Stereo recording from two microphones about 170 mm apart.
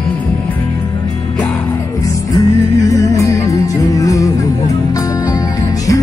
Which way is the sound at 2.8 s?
20° left (ahead or behind).